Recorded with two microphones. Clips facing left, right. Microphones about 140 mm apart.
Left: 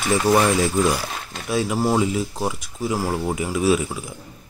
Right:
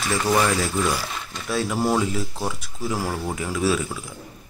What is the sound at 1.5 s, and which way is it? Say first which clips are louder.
Speech: left 2 dB; 10° left (ahead or behind).